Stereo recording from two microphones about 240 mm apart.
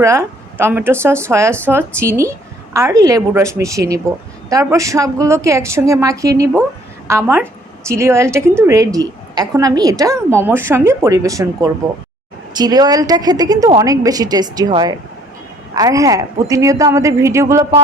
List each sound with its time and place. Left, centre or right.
0.0 s a woman's voice: centre